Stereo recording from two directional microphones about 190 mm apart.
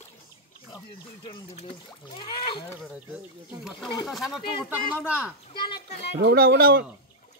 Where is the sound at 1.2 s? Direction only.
30° left (ahead or behind).